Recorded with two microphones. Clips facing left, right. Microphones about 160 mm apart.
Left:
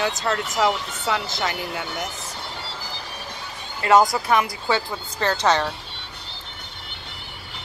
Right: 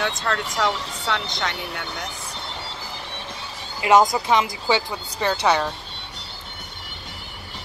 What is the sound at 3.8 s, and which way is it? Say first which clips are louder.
Speech: even; 20° right (ahead or behind).